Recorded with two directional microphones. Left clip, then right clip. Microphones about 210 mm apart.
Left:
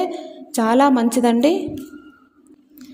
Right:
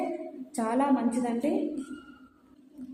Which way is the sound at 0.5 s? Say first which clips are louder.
Left 12 dB; 45° left (ahead or behind).